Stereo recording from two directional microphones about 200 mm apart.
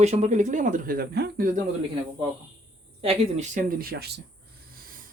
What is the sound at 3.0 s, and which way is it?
Speech, 30° right (ahead or behind).